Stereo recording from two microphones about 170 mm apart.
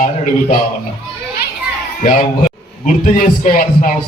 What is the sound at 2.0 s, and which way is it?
Speech, 50° left (ahead or behind).